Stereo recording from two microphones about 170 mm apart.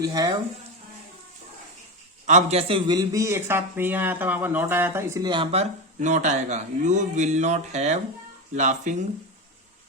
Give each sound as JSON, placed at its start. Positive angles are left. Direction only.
{"t": 0.0, "sound": "speech", "side_deg": -20}
{"t": 2.2, "sound": "speech", "side_deg": -40}
{"t": 5.3, "sound": "speech", "side_deg": -35}